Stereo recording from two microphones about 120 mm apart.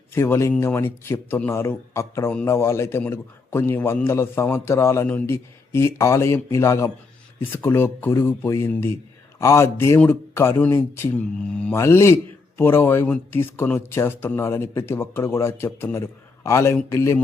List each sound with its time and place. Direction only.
0.1 s speech: 20° left (ahead or behind)